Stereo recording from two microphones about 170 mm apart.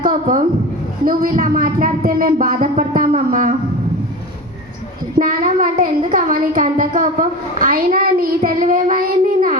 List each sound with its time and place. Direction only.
0.0 s a woman's voice: 50° right (ahead or behind)
1.0 s a sound: 55° right (ahead or behind)
5.1 s a woman's voice: 50° right (ahead or behind)